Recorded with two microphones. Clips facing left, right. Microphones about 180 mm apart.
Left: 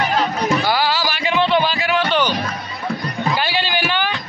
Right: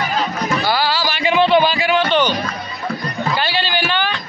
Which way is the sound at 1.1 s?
5° right (ahead or behind).